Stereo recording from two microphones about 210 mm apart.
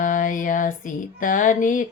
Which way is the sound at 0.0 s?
40° left (ahead or behind).